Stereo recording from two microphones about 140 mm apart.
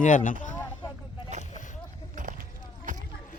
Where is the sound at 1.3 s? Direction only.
55° right (ahead or behind).